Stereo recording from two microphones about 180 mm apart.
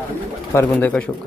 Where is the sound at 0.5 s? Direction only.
10° left (ahead or behind).